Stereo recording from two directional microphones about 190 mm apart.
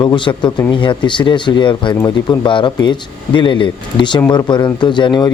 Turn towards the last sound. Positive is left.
turn(degrees=25)  # may be behind; listen again after turning